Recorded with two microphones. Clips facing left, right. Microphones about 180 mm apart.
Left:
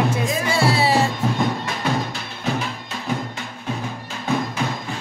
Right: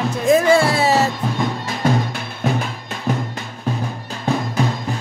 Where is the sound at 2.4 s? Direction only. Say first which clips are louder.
Right 4 dB; 50° right (ahead or behind).